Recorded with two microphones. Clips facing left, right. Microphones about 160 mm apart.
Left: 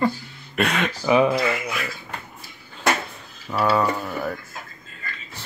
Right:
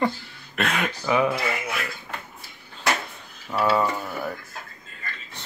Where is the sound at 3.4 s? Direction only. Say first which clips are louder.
Left 1 dB; 5° right (ahead or behind).